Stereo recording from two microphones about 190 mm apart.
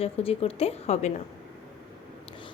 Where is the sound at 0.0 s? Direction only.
30° left (ahead or behind).